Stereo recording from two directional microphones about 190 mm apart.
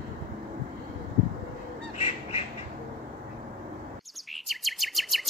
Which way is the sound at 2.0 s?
35° left (ahead or behind).